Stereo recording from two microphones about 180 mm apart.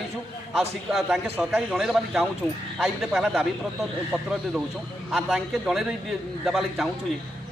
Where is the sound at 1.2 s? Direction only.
10° right (ahead or behind).